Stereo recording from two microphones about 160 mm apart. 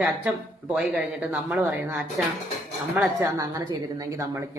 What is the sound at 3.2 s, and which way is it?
A woman's voice, 20° right (ahead or behind).